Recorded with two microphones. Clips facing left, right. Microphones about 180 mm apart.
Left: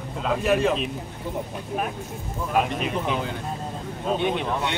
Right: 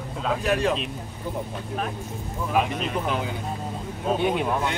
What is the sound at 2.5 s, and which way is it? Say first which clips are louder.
Speech: left 1 dB; centre (ahead or behind).